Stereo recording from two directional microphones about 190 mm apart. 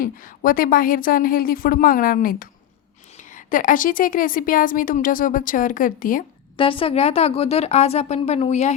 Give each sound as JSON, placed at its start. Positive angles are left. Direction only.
{"t": 0.0, "sound": "a woman's voice", "side_deg": 45}
{"t": 6.6, "sound": "a woman's voice", "side_deg": 30}